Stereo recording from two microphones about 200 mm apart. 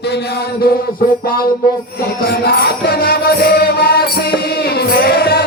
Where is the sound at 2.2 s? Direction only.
50° left (ahead or behind).